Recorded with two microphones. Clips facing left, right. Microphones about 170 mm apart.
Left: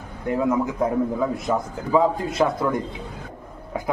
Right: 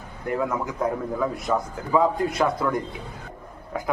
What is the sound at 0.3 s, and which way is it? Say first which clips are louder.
Speech: left 4 dB; 25° left (ahead or behind).